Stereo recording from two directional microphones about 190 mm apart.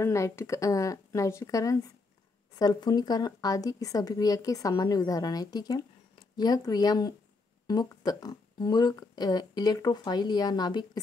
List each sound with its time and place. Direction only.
0.0 s speech: 15° left (ahead or behind)